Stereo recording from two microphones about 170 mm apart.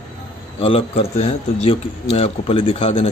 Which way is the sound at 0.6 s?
35° left (ahead or behind).